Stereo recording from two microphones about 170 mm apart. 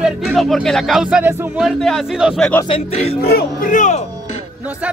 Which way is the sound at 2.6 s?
35° left (ahead or behind).